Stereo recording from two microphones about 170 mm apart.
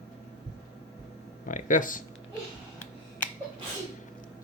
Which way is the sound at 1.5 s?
50° left (ahead or behind).